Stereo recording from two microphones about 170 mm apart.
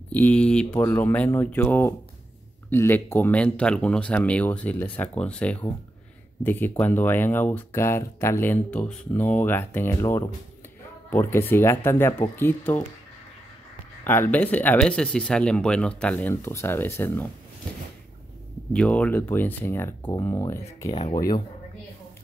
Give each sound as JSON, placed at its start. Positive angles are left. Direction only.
{"t": 0.1, "sound": "speech", "side_deg": 10}
{"t": 14.0, "sound": "speech", "side_deg": 10}
{"t": 18.7, "sound": "speech", "side_deg": 5}